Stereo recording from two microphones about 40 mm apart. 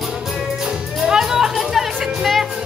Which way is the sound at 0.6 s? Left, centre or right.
Centre.